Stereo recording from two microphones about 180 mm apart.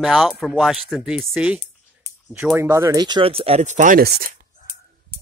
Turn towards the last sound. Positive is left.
turn(degrees=-55)  # may be behind; listen again after turning